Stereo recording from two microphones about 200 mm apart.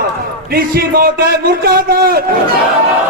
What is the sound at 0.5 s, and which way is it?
A man's voice, 50° right (ahead or behind).